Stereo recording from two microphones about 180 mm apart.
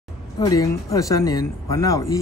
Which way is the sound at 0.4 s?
20° left (ahead or behind).